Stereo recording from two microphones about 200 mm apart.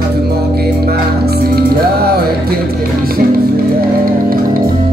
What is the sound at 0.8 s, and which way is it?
Music, 50° right (ahead or behind).